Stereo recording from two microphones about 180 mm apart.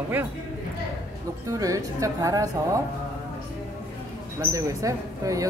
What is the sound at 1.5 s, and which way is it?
Speech, 20° right (ahead or behind).